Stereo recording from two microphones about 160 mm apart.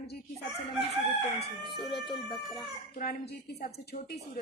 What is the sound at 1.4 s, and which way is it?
Speech, 30° left (ahead or behind).